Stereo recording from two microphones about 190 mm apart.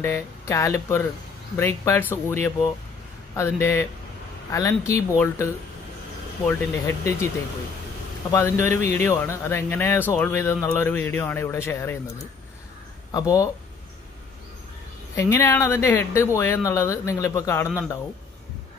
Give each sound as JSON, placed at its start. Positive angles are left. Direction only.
{"t": 0.0, "sound": "speech", "side_deg": 15}
{"t": 8.3, "sound": "speech", "side_deg": 15}
{"t": 13.1, "sound": "speech", "side_deg": 20}
{"t": 15.1, "sound": "speech", "side_deg": 15}